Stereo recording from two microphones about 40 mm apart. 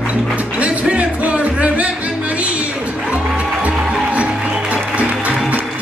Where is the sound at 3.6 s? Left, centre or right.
Right.